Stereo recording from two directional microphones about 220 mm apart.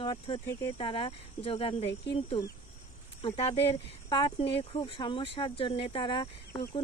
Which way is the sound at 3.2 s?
25° left (ahead or behind).